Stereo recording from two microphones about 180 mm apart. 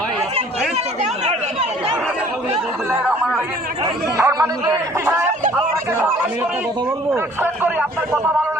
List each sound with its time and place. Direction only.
4.2 s speech: 20° right (ahead or behind)
7.1 s speech: 10° right (ahead or behind)